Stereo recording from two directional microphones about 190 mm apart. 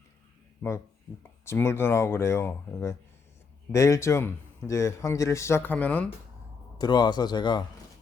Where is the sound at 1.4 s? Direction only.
15° left (ahead or behind).